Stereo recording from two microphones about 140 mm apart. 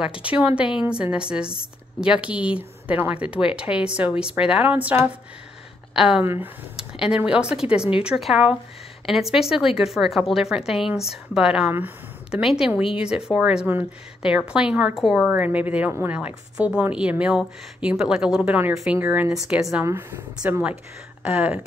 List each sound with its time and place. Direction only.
0.0 s a woman's voice: 10° right (ahead or behind)
6.2 s a woman's voice: 15° right (ahead or behind)
6.8 s a woman's voice: 5° right (ahead or behind)
19.8 s a woman's voice: 15° right (ahead or behind)